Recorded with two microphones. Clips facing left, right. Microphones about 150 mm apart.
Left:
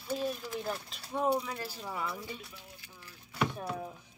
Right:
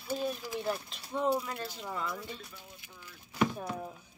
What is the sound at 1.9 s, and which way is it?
Speech, 10° left (ahead or behind).